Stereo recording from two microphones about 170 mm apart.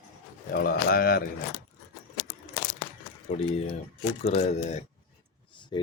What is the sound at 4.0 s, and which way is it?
Speech, 40° left (ahead or behind).